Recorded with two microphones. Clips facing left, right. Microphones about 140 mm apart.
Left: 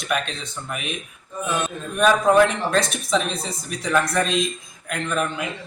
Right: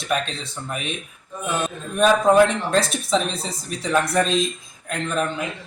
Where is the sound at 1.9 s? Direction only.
30° right (ahead or behind).